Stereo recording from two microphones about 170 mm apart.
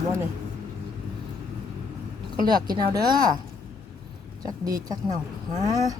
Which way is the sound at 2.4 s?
25° right (ahead or behind).